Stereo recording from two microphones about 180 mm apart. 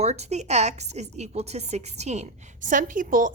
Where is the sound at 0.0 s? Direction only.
35° right (ahead or behind).